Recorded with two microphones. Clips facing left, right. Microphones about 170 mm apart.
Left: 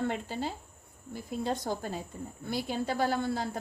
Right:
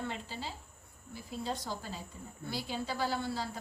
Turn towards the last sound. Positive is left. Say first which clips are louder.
# left 5 dB
turn(degrees=50)  # may be behind; listen again after turning